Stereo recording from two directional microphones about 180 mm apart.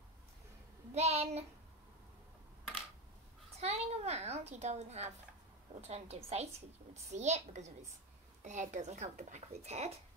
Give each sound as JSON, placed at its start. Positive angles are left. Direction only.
{"t": 0.9, "sound": "a child's voice", "side_deg": -35}
{"t": 3.5, "sound": "a child's voice", "side_deg": -35}